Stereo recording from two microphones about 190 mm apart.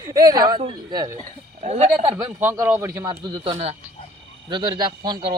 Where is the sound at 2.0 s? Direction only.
15° right (ahead or behind).